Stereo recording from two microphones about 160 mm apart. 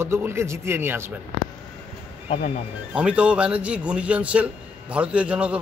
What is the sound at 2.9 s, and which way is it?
A man's voice, 5° right (ahead or behind).